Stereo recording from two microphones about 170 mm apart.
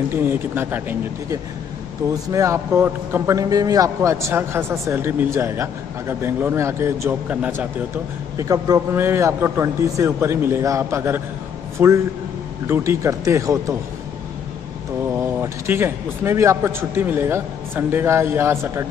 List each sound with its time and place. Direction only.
0.1 s a man's voice: 10° right (ahead or behind)
8.4 s a man's voice: 20° right (ahead or behind)
15.1 s a man's voice: 15° right (ahead or behind)